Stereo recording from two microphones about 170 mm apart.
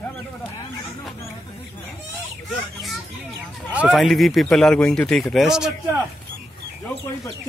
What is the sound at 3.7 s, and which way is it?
A man's voice, centre (ahead or behind).